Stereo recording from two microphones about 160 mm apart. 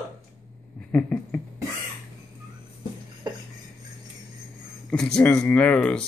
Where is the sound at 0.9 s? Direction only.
10° left (ahead or behind).